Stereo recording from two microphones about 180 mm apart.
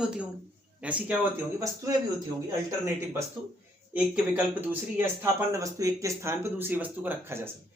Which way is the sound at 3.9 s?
5° right (ahead or behind).